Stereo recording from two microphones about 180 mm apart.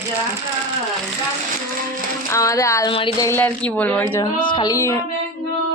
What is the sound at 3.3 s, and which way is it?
Speech, 10° left (ahead or behind).